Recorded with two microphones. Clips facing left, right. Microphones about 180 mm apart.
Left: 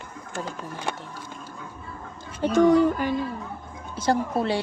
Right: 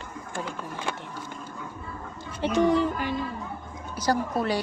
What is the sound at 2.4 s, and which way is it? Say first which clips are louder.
Speech: left 4 dB; 45° left (ahead or behind).